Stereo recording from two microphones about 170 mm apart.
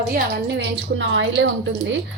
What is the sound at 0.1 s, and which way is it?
A woman's voice, 85° right.